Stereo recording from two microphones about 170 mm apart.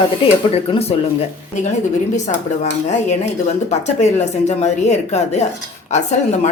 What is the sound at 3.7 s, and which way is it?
A woman's voice, 40° left (ahead or behind).